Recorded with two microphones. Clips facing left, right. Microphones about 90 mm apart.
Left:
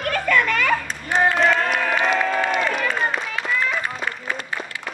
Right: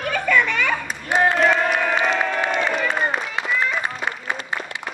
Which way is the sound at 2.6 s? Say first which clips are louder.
Right 1 dB; 5° right (ahead or behind).